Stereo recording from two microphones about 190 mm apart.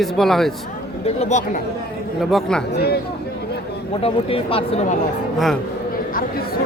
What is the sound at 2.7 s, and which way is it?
Speech, 60° left (ahead or behind).